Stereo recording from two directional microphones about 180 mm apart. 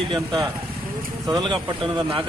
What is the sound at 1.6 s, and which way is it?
Speech, 25° right (ahead or behind).